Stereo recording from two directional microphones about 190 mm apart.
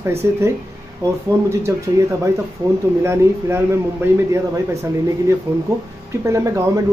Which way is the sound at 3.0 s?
15° right (ahead or behind).